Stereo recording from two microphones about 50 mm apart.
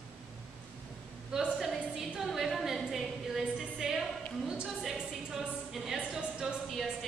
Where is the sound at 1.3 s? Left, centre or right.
Centre.